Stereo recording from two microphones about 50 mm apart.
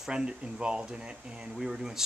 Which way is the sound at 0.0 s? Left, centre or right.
Centre.